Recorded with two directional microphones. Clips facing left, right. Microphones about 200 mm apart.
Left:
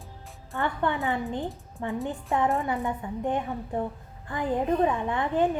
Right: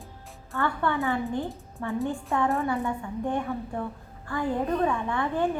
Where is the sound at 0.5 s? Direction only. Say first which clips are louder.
Right 1 dB; 20° left (ahead or behind).